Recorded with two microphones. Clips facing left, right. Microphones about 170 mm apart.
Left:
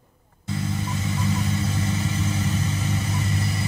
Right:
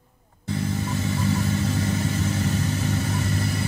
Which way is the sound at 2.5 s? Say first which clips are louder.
Right 2 dB; 60° right (ahead or behind).